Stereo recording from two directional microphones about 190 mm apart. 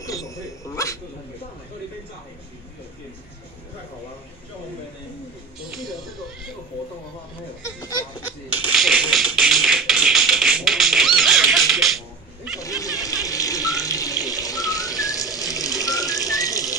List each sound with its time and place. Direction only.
0.8 s speech: 15° left (ahead or behind)
5.6 s speech: centre (ahead or behind)
8.7 s music: centre (ahead or behind)
12.5 s a sound: 20° left (ahead or behind)
13.8 s water tap: 20° left (ahead or behind)
15.5 s water: 20° left (ahead or behind)